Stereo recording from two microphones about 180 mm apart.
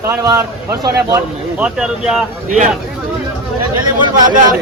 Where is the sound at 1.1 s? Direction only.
5° right (ahead or behind).